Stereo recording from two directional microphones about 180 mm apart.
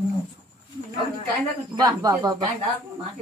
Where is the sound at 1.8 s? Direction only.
20° right (ahead or behind).